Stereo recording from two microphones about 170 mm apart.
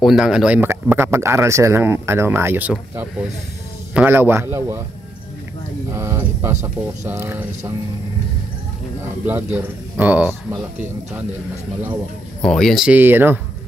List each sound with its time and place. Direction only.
0.0 s a man's voice: centre (ahead or behind)
5.9 s a man's voice: 15° right (ahead or behind)
9.0 s a man's voice: 10° right (ahead or behind)
12.4 s speech: 5° left (ahead or behind); by 13.4 s 10° right (ahead or behind)